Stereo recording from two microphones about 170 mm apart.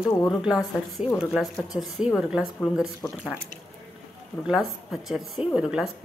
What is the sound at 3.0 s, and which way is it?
Speech, 10° left (ahead or behind).